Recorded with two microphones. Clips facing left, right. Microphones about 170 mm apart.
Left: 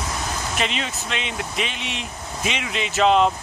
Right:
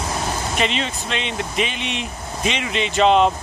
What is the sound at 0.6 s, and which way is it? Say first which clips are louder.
Speech: right 4 dB; 5° left (ahead or behind).